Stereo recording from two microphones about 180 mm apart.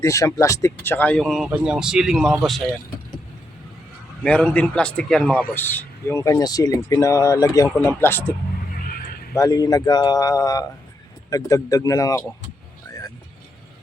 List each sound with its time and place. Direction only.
0.0 s speech: 15° left (ahead or behind); by 2.3 s 5° right (ahead or behind)
4.2 s a man's voice: 5° left (ahead or behind)
9.3 s a man's voice: 20° left (ahead or behind)